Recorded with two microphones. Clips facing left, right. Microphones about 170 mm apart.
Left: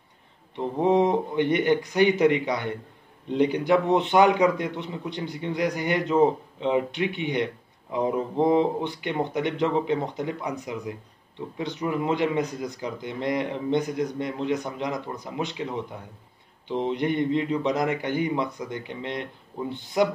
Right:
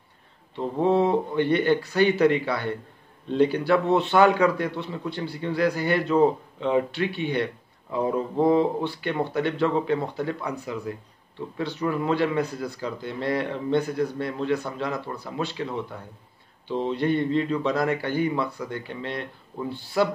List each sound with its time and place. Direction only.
0.6 s a man's voice: 20° left (ahead or behind)